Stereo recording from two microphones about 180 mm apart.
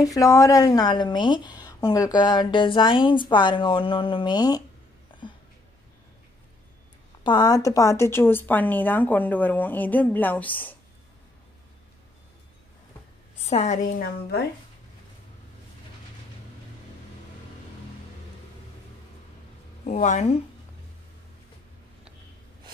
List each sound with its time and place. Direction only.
0.0 s a woman's voice: 20° left (ahead or behind)
7.2 s speech: 20° left (ahead or behind)
13.5 s a woman's voice: 40° left (ahead or behind)
19.9 s a woman's voice: 40° left (ahead or behind)